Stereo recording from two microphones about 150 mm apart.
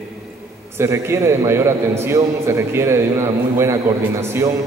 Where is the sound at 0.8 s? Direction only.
15° right (ahead or behind).